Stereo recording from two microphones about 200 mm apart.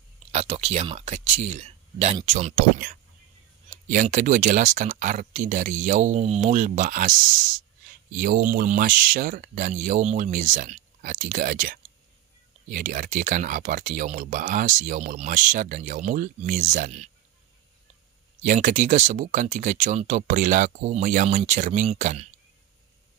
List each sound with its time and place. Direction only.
0.3 s speech: 35° right (ahead or behind)
8.2 s speech: 45° right (ahead or behind)
18.4 s speech: 40° right (ahead or behind)